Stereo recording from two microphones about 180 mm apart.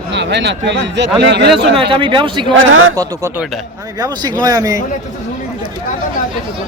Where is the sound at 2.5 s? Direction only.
90° right.